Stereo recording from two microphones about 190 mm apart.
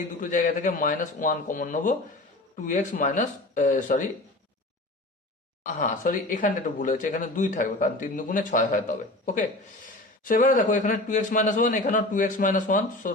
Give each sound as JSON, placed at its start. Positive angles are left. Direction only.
{"t": 0.2, "sound": "speech", "side_deg": 45}
{"t": 5.6, "sound": "speech", "side_deg": 45}